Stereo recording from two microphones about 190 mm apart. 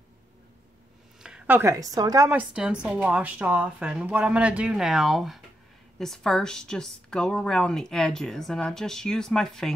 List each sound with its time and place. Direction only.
1.2 s a woman's voice: 5° right (ahead or behind)
2.5 s speech: 5° right (ahead or behind)